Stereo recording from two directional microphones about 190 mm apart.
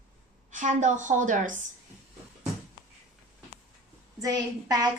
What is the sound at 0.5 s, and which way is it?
A woman's voice, 40° right (ahead or behind).